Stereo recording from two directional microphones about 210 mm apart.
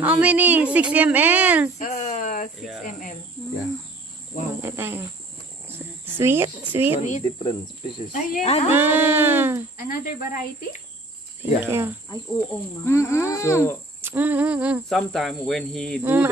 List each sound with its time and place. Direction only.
0.0 s a woman's voice: 5° right (ahead or behind)
1.8 s a sound: 35° left (ahead or behind)
2.8 s speech: 40° left (ahead or behind)
4.6 s a woman's voice: 10° right (ahead or behind)
7.0 s speech: 35° left (ahead or behind)
8.6 s a woman's voice: 10° right (ahead or behind)
9.8 s speech: 45° left (ahead or behind)
11.6 s a woman's voice: 10° right (ahead or behind)
12.1 s speech: 15° left (ahead or behind)
14.0 s speech: 10° right (ahead or behind)
16.0 s a woman's voice: 10° right (ahead or behind)